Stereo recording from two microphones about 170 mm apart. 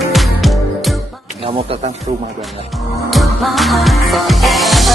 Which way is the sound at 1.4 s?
35° right (ahead or behind).